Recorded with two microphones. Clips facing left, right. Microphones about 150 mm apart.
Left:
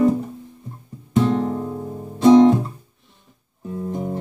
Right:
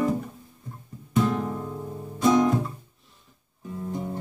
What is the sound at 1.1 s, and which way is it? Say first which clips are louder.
Music: left 6 dB; 30° left (ahead or behind).